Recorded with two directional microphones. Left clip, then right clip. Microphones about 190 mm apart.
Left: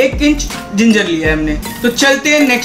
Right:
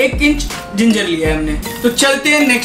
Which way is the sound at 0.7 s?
50° left (ahead or behind).